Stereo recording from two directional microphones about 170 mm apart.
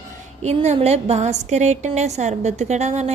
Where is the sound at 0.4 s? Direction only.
40° right (ahead or behind).